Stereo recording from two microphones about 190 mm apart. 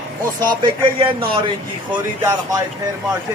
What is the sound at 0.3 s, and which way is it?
Speech, 25° right (ahead or behind).